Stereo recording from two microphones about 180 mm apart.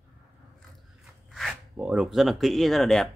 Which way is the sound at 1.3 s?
5° right (ahead or behind).